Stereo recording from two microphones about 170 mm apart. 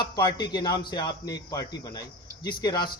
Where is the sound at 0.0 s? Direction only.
25° left (ahead or behind).